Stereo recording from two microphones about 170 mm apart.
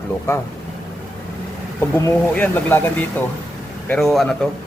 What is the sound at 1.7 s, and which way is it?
A man's voice, 15° left (ahead or behind).